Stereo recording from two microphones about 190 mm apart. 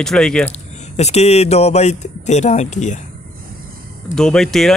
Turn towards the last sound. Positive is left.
turn(degrees=0)  # may be behind; listen again after turning